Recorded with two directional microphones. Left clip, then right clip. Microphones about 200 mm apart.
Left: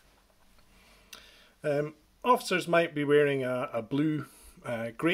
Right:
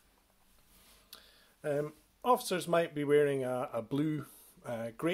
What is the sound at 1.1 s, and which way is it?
Speech, 10° left (ahead or behind).